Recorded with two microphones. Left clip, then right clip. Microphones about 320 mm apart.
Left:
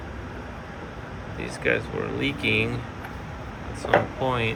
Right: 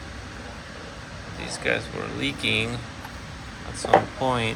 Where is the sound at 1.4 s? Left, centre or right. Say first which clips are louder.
Left 1 dB; centre.